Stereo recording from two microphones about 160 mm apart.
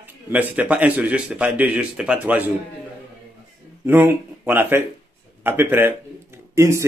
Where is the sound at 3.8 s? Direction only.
15° right (ahead or behind).